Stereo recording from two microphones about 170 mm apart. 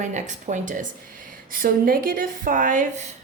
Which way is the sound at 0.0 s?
45° right (ahead or behind).